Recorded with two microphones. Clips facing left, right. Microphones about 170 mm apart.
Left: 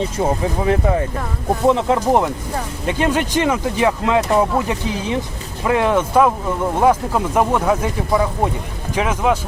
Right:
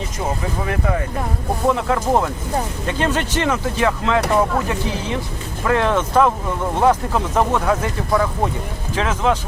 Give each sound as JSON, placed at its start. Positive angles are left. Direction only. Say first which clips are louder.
{"t": 0.6, "sound": "speech", "louder": "left 5 dB", "side_deg": 25}